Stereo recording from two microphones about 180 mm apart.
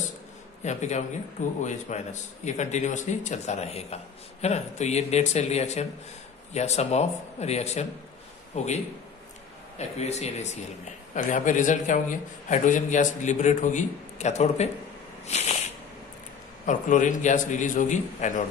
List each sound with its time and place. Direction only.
0.7 s a man's voice: 40° left (ahead or behind)
9.8 s a man's voice: 35° left (ahead or behind)
15.2 s a sound: 40° left (ahead or behind)
16.6 s a man's voice: 45° left (ahead or behind)